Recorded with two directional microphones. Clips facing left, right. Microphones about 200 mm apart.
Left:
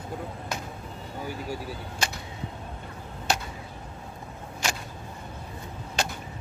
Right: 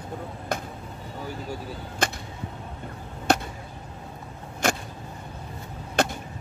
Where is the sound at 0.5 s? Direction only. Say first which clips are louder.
Right 7 dB; 55° right (ahead or behind).